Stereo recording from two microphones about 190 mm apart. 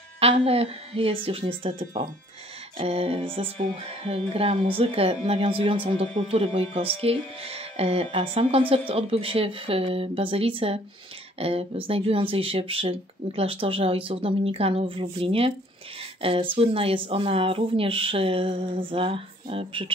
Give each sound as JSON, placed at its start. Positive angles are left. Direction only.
{"t": 0.2, "sound": "speech", "side_deg": -30}